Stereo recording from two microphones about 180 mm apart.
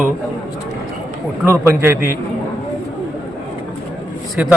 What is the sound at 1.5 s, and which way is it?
Speech, 15° right (ahead or behind).